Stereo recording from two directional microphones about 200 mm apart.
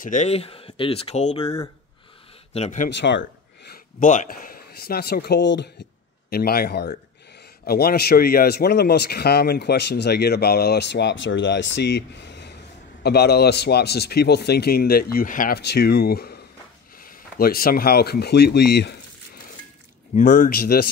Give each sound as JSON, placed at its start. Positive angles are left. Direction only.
{"t": 0.0, "sound": "speech", "side_deg": 40}
{"t": 2.5, "sound": "speech", "side_deg": 35}
{"t": 2.9, "sound": "speech", "side_deg": 60}
{"t": 3.7, "sound": "speech", "side_deg": 40}
{"t": 6.3, "sound": "a man's voice", "side_deg": 50}
{"t": 20.2, "sound": "a man's voice", "side_deg": 40}